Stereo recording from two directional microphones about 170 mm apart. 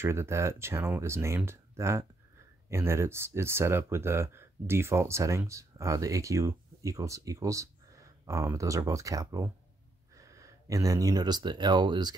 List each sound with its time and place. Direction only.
0.0 s speech: 15° right (ahead or behind)